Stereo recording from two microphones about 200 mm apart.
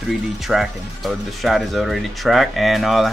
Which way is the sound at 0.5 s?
Centre (ahead or behind).